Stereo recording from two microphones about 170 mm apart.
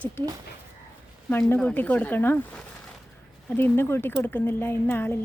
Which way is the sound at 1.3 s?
10° left (ahead or behind).